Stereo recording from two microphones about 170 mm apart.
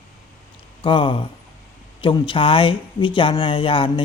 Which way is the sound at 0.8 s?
30° left (ahead or behind).